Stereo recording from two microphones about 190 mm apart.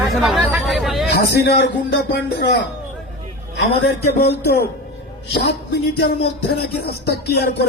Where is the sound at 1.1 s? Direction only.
55° left (ahead or behind).